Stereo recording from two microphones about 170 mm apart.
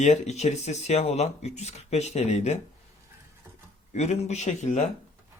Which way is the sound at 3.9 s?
40° left (ahead or behind).